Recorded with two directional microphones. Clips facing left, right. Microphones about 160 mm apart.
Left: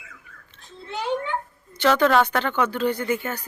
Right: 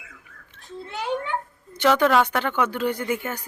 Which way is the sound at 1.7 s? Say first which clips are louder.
Even; 15° right (ahead or behind).